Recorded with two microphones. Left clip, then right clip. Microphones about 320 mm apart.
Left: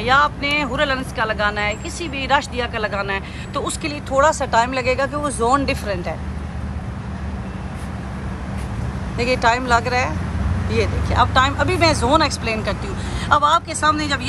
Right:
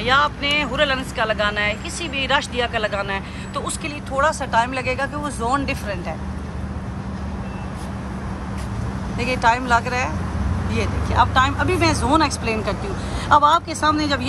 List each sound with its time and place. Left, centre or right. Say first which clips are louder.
0.0 s speech: left 2 dB; centre
9.2 s speech: left 1 dB; centre